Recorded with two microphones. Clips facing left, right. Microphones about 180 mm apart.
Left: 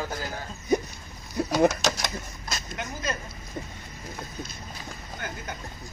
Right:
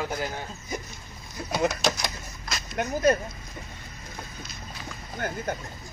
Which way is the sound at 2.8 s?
55° right (ahead or behind).